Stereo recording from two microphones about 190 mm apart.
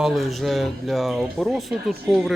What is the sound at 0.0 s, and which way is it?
Speech, centre (ahead or behind).